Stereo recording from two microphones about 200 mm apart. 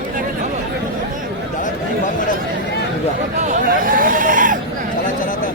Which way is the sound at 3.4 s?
40° right (ahead or behind).